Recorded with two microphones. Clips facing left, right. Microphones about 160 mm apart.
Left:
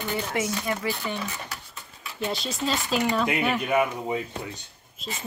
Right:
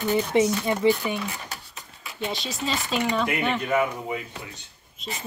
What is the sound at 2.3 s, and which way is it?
Speech, centre (ahead or behind).